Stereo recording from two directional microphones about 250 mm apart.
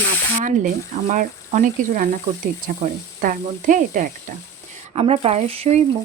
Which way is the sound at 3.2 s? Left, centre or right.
Right.